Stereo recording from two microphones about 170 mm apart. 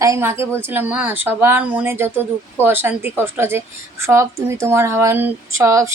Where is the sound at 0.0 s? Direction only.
15° right (ahead or behind).